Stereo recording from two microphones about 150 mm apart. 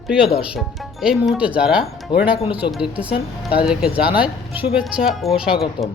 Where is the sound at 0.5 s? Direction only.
5° right (ahead or behind).